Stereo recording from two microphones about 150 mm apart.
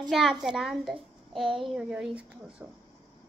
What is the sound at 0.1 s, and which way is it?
A child's voice, centre (ahead or behind).